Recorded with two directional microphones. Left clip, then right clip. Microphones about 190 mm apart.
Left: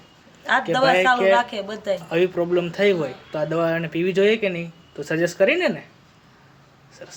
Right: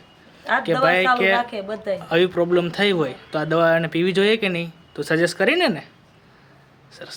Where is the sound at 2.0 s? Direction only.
40° right (ahead or behind).